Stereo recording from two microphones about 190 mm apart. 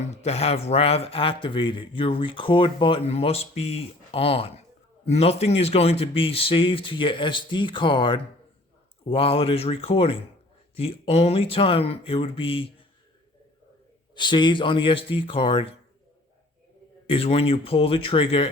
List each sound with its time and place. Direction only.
0.0 s speech: 35° left (ahead or behind)
14.2 s speech: 25° left (ahead or behind)
17.1 s speech: 30° left (ahead or behind)